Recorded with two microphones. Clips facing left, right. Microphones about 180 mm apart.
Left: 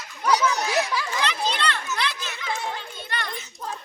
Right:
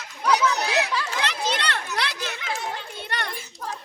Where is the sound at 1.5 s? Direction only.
65° right (ahead or behind).